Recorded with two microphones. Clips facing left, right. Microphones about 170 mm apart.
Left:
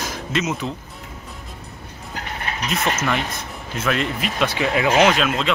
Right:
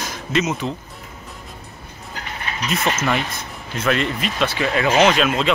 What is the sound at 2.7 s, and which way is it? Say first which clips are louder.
Speech: right 2 dB; centre (ahead or behind).